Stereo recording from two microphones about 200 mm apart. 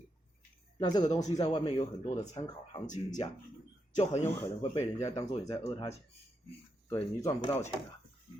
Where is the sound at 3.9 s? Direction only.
35° left (ahead or behind).